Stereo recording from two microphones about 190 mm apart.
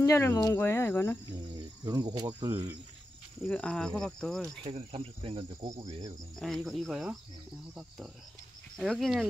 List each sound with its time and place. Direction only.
0.0 s speech: 15° left (ahead or behind)
1.5 s cricket: 20° right (ahead or behind)
2.1 s insect: 20° right (ahead or behind)
3.4 s speech: 5° left (ahead or behind)
4.6 s insect: 30° right (ahead or behind)
5.8 s cricket: 30° right (ahead or behind)
6.4 s speech: centre (ahead or behind)
8.7 s speech: centre (ahead or behind)